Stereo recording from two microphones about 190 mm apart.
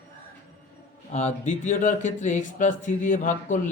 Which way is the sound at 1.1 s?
35° left (ahead or behind).